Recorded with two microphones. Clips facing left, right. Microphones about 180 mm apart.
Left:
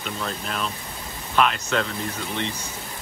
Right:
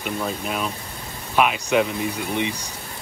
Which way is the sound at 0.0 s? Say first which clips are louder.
Right 4 dB; 10° right (ahead or behind).